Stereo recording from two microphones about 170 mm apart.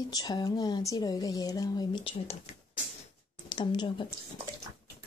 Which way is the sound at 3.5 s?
25° left (ahead or behind).